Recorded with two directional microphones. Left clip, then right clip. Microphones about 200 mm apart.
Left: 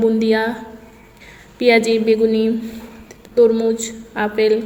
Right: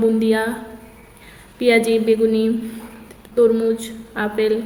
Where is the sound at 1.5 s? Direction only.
15° left (ahead or behind).